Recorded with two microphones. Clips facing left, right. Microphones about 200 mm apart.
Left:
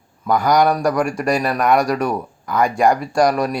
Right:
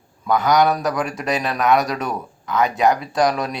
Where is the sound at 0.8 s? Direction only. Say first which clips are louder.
Left 4 dB; 10° left (ahead or behind).